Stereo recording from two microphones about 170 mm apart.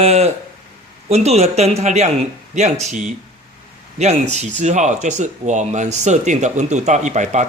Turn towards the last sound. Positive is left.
turn(degrees=-45)  # may be behind; listen again after turning